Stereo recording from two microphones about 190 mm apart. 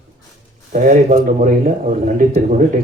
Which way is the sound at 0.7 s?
40° right (ahead or behind).